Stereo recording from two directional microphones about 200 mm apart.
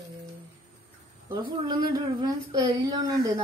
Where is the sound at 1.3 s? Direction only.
20° right (ahead or behind).